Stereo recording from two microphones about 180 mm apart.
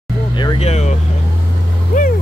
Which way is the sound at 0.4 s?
30° left (ahead or behind).